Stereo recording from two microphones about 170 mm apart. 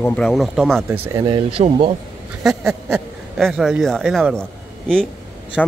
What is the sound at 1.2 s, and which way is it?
Speech, 30° right (ahead or behind).